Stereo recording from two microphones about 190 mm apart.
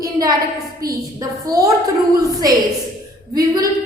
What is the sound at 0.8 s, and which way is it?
Speech, 50° right (ahead or behind).